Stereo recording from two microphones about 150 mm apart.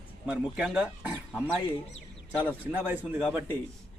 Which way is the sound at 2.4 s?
10° right (ahead or behind).